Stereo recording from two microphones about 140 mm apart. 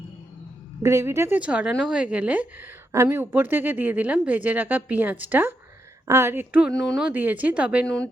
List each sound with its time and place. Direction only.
0.8 s speech: 20° right (ahead or behind)
6.7 s speech: centre (ahead or behind)
7.1 s speech: 10° right (ahead or behind)